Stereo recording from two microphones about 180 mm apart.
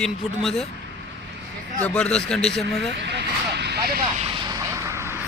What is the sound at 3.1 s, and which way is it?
Vehicle, 70° right (ahead or behind).